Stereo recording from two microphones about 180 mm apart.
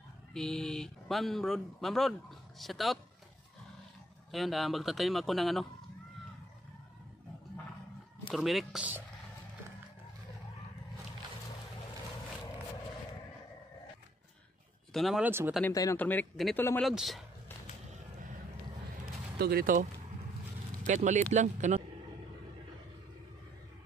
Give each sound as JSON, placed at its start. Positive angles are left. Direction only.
{"t": 0.3, "sound": "speech", "side_deg": 0}
{"t": 4.3, "sound": "speech", "side_deg": 0}
{"t": 8.3, "sound": "speech", "side_deg": 0}
{"t": 14.9, "sound": "speech", "side_deg": 0}
{"t": 15.6, "sound": "speech", "side_deg": 20}
{"t": 19.3, "sound": "speech", "side_deg": -55}